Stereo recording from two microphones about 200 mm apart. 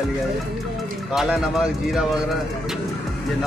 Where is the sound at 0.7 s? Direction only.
Centre (ahead or behind).